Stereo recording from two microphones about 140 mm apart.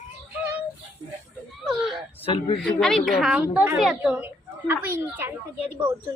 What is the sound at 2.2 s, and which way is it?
Speech, 40° left (ahead or behind).